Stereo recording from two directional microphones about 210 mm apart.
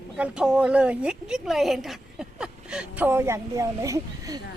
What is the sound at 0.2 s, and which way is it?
A woman's voice, 5° right (ahead or behind).